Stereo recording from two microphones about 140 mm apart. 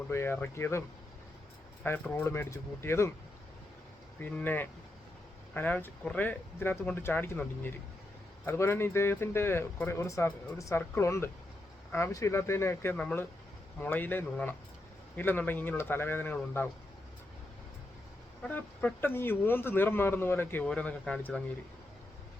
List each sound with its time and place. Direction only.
0.1 s speech: 15° left (ahead or behind)
4.2 s speech: 10° left (ahead or behind)
18.4 s speech: 10° left (ahead or behind)